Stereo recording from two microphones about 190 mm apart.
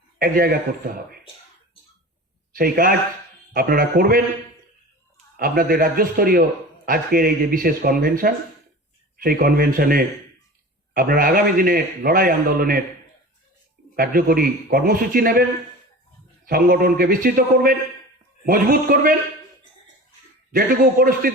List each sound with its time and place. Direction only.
0.2 s a man's voice: 50° right (ahead or behind)
2.5 s a man's voice: 50° right (ahead or behind)
5.4 s a man's voice: 50° right (ahead or behind)
13.9 s a man's voice: 50° right (ahead or behind)
16.5 s a man's voice: 50° right (ahead or behind)
20.5 s a man's voice: 50° right (ahead or behind)